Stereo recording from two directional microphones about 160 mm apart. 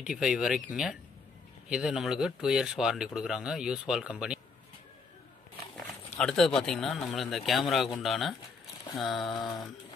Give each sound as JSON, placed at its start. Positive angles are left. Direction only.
{"t": 0.0, "sound": "speech", "side_deg": -5}
{"t": 6.1, "sound": "speech", "side_deg": 5}